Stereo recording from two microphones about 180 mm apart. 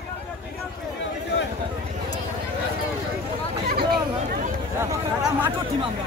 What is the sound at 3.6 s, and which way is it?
Hubbub, 60° right (ahead or behind).